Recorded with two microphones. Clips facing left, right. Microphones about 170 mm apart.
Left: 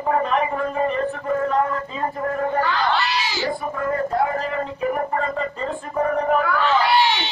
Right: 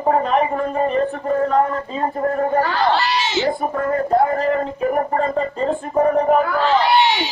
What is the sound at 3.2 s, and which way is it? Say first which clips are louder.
Speech: right 6 dB; 20° right (ahead or behind).